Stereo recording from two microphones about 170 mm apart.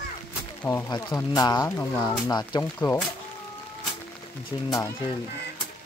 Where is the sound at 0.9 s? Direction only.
25° left (ahead or behind).